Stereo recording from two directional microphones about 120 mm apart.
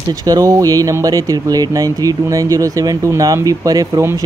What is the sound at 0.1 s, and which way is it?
Speech, 30° right (ahead or behind).